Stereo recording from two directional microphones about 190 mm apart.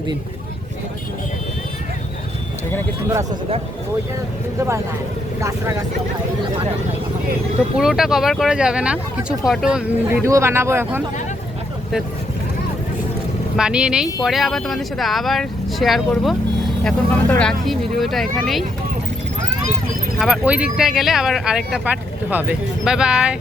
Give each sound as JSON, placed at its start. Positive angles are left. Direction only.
{"t": 5.4, "sound": "speech", "side_deg": -15}
{"t": 7.8, "sound": "speech", "side_deg": 0}
{"t": 10.2, "sound": "speech", "side_deg": -15}
{"t": 13.6, "sound": "speech", "side_deg": -5}
{"t": 20.1, "sound": "speech", "side_deg": -5}